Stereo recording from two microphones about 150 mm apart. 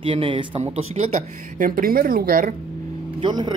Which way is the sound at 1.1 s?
65° right (ahead or behind).